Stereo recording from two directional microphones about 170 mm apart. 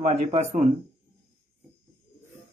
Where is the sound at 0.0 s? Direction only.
40° right (ahead or behind).